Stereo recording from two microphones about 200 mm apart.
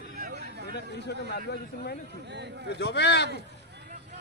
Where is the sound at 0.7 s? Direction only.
55° left (ahead or behind).